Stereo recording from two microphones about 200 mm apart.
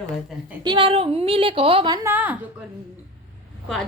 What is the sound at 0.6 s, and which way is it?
A woman's voice, 25° right (ahead or behind).